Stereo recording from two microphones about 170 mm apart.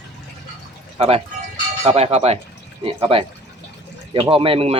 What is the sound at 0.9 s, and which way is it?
Speech, 35° right (ahead or behind).